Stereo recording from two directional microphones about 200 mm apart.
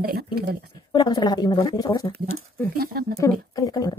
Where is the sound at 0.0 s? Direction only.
50° right (ahead or behind).